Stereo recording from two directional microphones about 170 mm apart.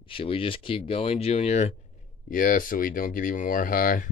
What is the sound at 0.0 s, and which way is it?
Speech, 30° left (ahead or behind).